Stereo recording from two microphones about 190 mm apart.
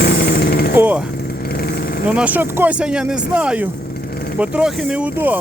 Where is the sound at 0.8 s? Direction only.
5° right (ahead or behind).